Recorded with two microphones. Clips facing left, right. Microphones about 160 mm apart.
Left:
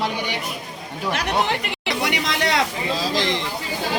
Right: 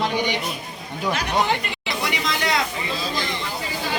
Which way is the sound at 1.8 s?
70° left (ahead or behind).